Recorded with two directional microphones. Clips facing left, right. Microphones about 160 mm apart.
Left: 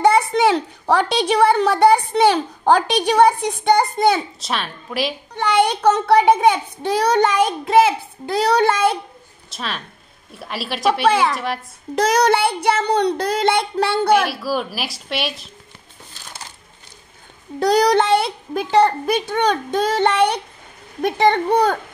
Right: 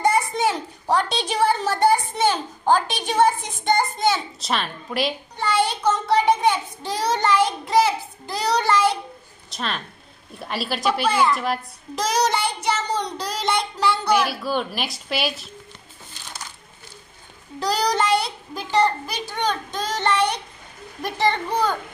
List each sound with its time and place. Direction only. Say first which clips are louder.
0.0 s a woman's voice: left 6 dB; 75° left (ahead or behind)
4.4 s a woman's voice: even; centre (ahead or behind)
5.8 s a child's voice: left 5 dB; 65° left (ahead or behind)
9.5 s a woman's voice: even; centre (ahead or behind)
11.1 s a woman's voice: left 3 dB; 65° left (ahead or behind)
11.3 s a woman's voice: even; centre (ahead or behind)
11.9 s a child's voice: left 6 dB; 60° left (ahead or behind)
14.3 s a woman's voice: left 2 dB; centre (ahead or behind)
17.6 s a child's voice: left 7 dB; 60° left (ahead or behind)